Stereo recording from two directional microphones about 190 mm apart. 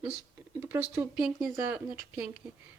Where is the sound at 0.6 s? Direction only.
10° right (ahead or behind).